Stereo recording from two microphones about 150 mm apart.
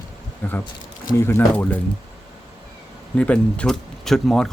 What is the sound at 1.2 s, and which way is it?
Speech, 15° left (ahead or behind).